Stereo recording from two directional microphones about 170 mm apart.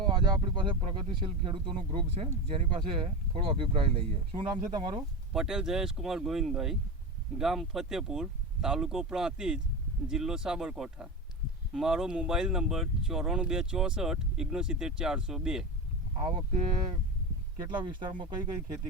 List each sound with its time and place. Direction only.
0.3 s speech: 30° right (ahead or behind)
5.3 s speech: 5° right (ahead or behind)
16.1 s speech: 30° right (ahead or behind)
17.7 s speech: 30° right (ahead or behind)